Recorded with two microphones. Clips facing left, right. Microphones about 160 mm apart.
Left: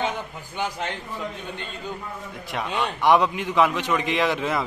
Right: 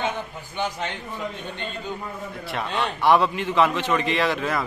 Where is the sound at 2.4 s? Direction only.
10° left (ahead or behind).